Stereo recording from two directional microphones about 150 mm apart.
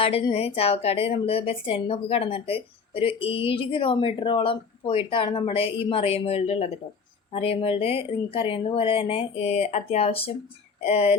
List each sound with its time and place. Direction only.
0.0 s a woman's voice: 40° left (ahead or behind)